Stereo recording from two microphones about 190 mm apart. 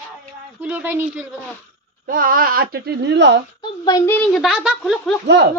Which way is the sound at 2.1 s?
50° right (ahead or behind).